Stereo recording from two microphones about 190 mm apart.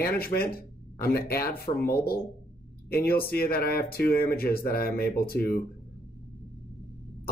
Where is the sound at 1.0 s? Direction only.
55° left (ahead or behind).